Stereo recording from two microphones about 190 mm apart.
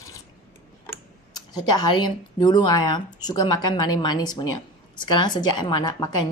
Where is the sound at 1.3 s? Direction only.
20° left (ahead or behind).